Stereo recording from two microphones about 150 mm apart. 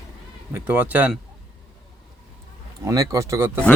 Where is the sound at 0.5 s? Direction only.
10° right (ahead or behind).